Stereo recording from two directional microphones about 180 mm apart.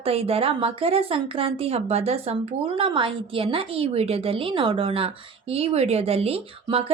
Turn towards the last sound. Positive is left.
turn(degrees=-30)  # may be behind; listen again after turning